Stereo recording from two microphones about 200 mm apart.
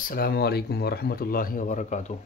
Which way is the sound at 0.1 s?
50° left (ahead or behind).